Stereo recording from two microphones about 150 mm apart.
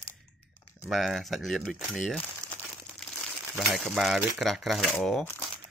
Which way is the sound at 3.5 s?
Centre (ahead or behind).